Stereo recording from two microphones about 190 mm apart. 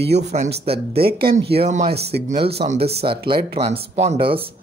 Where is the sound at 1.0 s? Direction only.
55° right (ahead or behind).